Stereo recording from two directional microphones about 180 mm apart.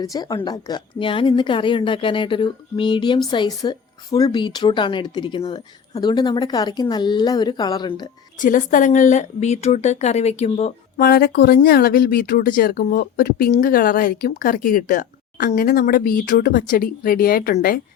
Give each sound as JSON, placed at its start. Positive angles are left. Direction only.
{"t": 0.0, "sound": "a woman's voice", "side_deg": 20}
{"t": 8.4, "sound": "speech", "side_deg": 45}
{"t": 10.9, "sound": "speech", "side_deg": 60}